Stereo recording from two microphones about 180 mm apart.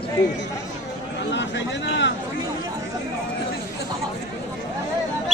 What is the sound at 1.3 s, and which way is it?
Speech, 75° left (ahead or behind).